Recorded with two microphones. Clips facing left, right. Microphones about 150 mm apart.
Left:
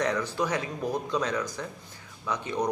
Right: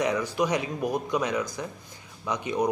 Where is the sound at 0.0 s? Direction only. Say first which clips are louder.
Right 2 dB; 10° right (ahead or behind).